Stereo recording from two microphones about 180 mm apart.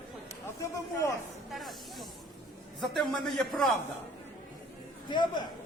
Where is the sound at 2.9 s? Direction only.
Centre (ahead or behind).